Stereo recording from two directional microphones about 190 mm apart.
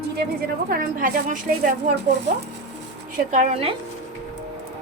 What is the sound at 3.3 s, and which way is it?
Speech, 35° right (ahead or behind).